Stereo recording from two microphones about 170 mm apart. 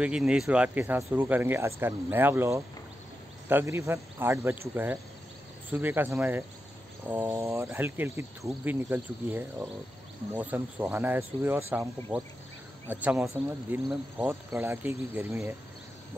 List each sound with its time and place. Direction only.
0.0 s speech: 5° right (ahead or behind)